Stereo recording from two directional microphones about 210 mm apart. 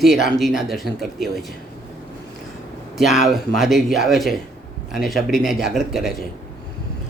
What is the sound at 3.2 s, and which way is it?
Speech, centre (ahead or behind).